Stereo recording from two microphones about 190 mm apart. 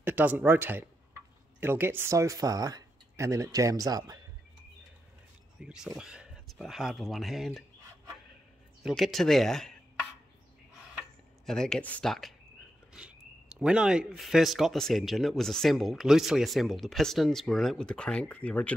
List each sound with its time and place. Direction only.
0.0 s speech: 10° right (ahead or behind)
5.6 s speech: 5° right (ahead or behind)
8.8 s speech: centre (ahead or behind)
11.0 s tick-tock: 5° left (ahead or behind)
12.9 s speech: 5° right (ahead or behind)